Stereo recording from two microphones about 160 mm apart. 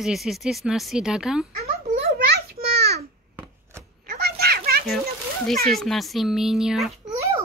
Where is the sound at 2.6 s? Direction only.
80° right.